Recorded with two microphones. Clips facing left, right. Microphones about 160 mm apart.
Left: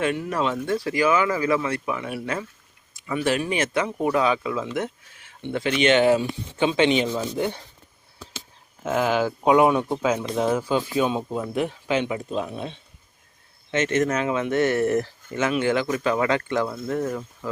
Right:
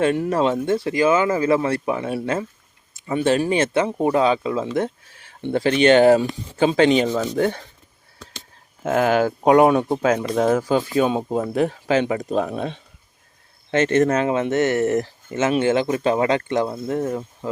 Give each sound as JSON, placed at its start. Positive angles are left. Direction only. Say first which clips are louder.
{"t": 0.0, "sound": "speech", "louder": "right 5 dB", "side_deg": -35}
{"t": 8.8, "sound": "speech", "louder": "right 4 dB", "side_deg": -55}
{"t": 13.7, "sound": "speech", "louder": "right 5 dB", "side_deg": -35}
{"t": 14.4, "sound": "speech", "louder": "right 2 dB", "side_deg": -20}